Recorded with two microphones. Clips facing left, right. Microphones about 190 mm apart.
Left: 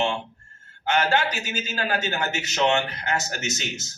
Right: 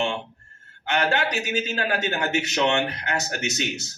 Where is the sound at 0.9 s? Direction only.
65° right (ahead or behind).